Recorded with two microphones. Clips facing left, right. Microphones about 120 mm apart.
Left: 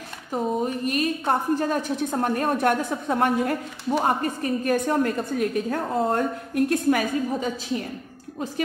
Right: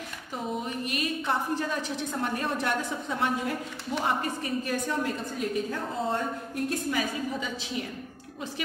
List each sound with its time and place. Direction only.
0.3 s a woman's voice: 45° left (ahead or behind)